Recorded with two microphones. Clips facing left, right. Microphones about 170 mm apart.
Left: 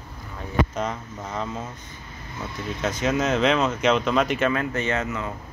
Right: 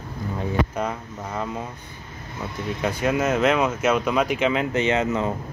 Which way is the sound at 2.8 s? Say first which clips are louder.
Right 1 dB; 10° right (ahead or behind).